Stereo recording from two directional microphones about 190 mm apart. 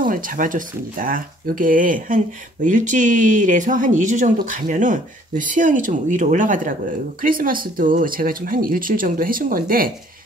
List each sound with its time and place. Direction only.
0.0 s speech: 45° right (ahead or behind)